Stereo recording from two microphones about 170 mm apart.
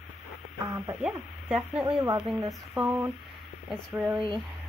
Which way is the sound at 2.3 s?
Centre (ahead or behind).